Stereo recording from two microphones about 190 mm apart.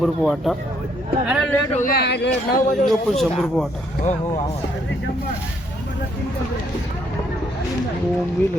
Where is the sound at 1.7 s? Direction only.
45° left (ahead or behind); by 2.6 s 60° left (ahead or behind).